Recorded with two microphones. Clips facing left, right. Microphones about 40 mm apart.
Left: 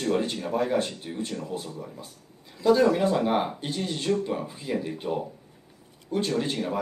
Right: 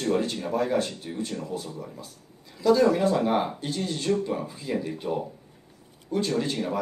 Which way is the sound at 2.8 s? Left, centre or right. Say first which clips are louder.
Even; centre.